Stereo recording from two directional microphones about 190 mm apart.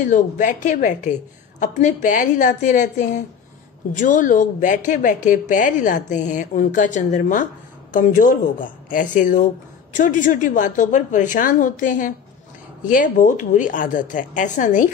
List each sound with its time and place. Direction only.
0.0 s speech: 40° left (ahead or behind)